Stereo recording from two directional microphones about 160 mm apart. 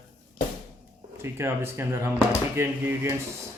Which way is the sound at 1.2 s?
15° right (ahead or behind).